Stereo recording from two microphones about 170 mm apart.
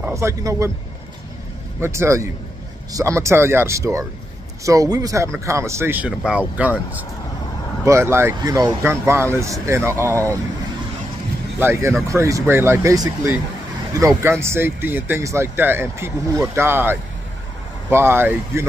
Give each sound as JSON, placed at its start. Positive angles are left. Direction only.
{"t": 0.0, "sound": "speech", "side_deg": -15}
{"t": 1.8, "sound": "speech", "side_deg": -15}
{"t": 7.8, "sound": "speech", "side_deg": -15}
{"t": 11.6, "sound": "speech", "side_deg": -15}